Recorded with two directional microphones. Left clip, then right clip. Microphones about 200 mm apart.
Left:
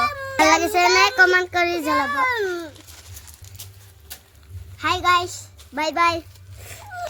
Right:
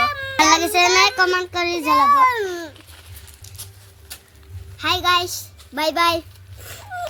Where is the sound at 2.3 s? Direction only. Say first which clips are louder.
Right 1 dB; 20° left (ahead or behind).